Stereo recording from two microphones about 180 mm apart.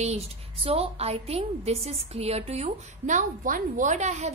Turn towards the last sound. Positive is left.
turn(degrees=-40)  # may be behind; listen again after turning